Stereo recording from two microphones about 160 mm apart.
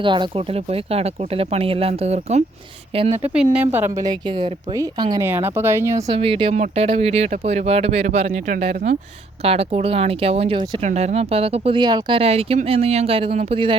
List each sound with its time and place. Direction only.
0.0 s speech: 30° right (ahead or behind)
3.2 s speech: 5° right (ahead or behind)
6.1 s speech: 35° right (ahead or behind)